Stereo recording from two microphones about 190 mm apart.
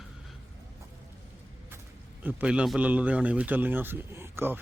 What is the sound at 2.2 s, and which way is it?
Speech, 5° right (ahead or behind).